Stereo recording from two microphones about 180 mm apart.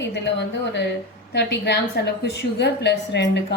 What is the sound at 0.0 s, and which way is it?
A woman's voice, 75° left (ahead or behind).